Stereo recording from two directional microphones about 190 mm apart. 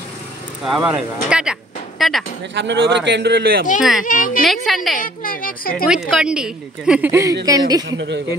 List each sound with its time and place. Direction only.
0.7 s speech: 5° right (ahead or behind)
2.5 s a man's voice: 65° right (ahead or behind)
4.0 s speech: 45° left (ahead or behind)
4.5 s a woman's voice: centre (ahead or behind)
4.9 s a woman's voice: 45° left (ahead or behind)
5.9 s a woman's voice: 5° right (ahead or behind); by 7.8 s 20° right (ahead or behind)
7.9 s a man's voice: 70° right (ahead or behind)